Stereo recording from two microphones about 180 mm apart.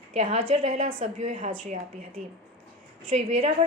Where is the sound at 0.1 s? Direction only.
35° right (ahead or behind).